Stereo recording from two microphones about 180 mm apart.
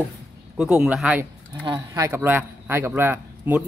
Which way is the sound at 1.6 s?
20° right (ahead or behind).